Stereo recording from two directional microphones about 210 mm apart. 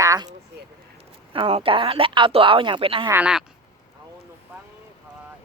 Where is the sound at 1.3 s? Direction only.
25° right (ahead or behind).